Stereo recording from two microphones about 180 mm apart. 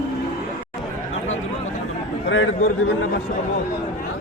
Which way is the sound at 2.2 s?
90° left.